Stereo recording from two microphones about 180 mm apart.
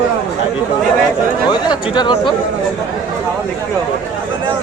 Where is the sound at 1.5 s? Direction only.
25° left (ahead or behind).